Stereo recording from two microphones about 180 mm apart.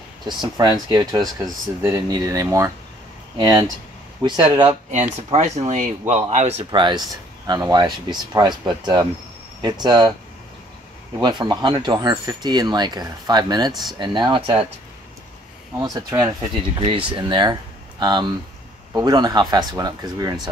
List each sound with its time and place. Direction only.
0.2 s speech: 25° right (ahead or behind)
11.1 s speech: 25° right (ahead or behind)
15.8 s speech: 20° right (ahead or behind)